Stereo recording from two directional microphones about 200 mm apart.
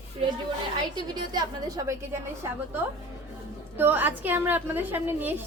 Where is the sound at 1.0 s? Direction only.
20° right (ahead or behind).